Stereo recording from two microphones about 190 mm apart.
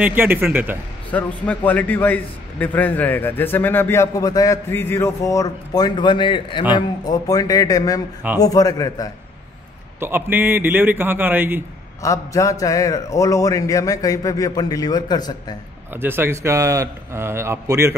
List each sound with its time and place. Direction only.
0.0 s a man's voice: 10° right (ahead or behind)
1.1 s a man's voice: 5° left (ahead or behind)
9.9 s a man's voice: 10° right (ahead or behind)
12.0 s a man's voice: 15° left (ahead or behind)
15.9 s a man's voice: 10° right (ahead or behind)